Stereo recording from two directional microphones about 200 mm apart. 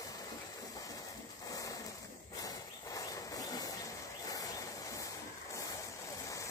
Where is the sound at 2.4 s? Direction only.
15° left (ahead or behind).